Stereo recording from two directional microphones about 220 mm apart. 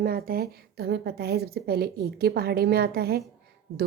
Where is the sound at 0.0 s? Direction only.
45° right (ahead or behind).